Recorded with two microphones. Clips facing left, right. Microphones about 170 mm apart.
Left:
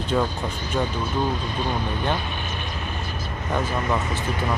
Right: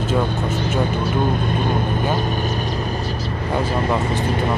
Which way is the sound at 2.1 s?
40° right (ahead or behind).